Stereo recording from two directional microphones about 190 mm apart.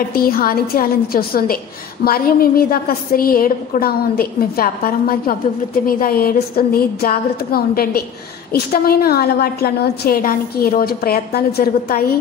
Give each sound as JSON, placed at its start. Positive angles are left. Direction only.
{"t": 0.1, "sound": "a woman's voice", "side_deg": 50}